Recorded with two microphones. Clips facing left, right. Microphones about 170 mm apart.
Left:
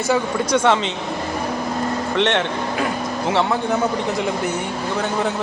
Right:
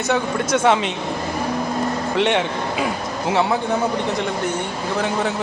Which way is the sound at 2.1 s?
10° right (ahead or behind).